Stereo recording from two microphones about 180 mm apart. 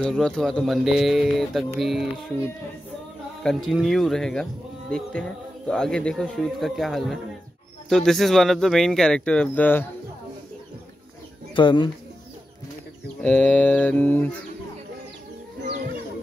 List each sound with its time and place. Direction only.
0.0 s speech: 5° left (ahead or behind)
3.4 s speech: centre (ahead or behind)
5.7 s speech: 5° left (ahead or behind)
11.5 s speech: 25° left (ahead or behind)
13.2 s a sound: 5° left (ahead or behind)